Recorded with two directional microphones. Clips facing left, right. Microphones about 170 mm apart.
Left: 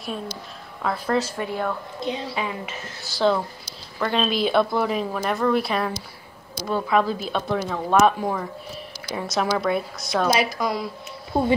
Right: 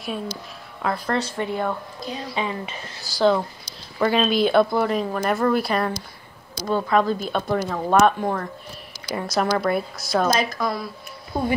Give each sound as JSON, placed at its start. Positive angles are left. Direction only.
{"t": 0.8, "sound": "speech", "side_deg": 5}
{"t": 2.0, "sound": "a woman's voice", "side_deg": 25}
{"t": 2.3, "sound": "speech", "side_deg": 5}
{"t": 10.2, "sound": "a woman's voice", "side_deg": 10}
{"t": 11.3, "sound": "a woman's voice", "side_deg": 25}